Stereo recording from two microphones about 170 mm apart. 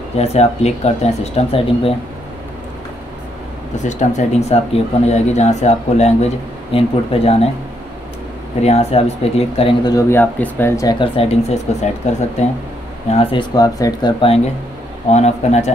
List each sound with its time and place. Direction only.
0.2 s speech: 40° left (ahead or behind)
3.8 s speech: 40° left (ahead or behind)
8.6 s speech: 35° left (ahead or behind)
9.8 s speech: 15° left (ahead or behind)
11.1 s speech: 40° left (ahead or behind); by 14.1 s 20° left (ahead or behind)
15.0 s speech: 40° left (ahead or behind)